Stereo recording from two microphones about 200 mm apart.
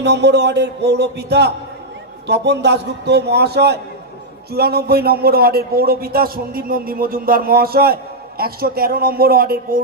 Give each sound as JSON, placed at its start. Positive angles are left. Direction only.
{"t": 0.0, "sound": "a man's voice", "side_deg": -60}